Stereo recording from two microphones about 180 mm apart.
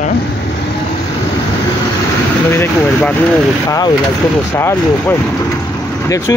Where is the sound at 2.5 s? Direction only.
10° left (ahead or behind).